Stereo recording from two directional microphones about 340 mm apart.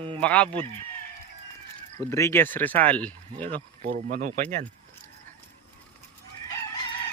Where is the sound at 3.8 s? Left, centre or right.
Right.